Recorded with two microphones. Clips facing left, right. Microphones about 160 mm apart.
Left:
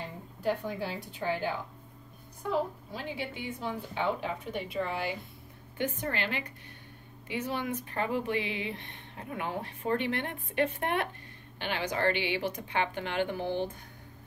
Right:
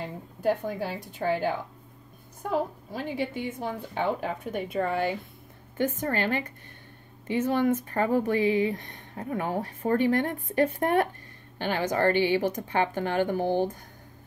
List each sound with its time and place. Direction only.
0.4 s speech: 45° right (ahead or behind)
2.9 s speech: 45° right (ahead or behind)